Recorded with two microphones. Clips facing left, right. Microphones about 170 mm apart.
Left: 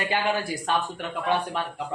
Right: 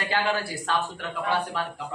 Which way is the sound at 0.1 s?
15° left (ahead or behind).